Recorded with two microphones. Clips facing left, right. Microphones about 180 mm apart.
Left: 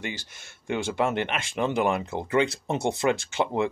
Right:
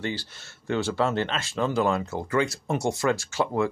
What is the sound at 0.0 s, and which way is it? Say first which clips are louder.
Speech: right 4 dB; 15° left (ahead or behind).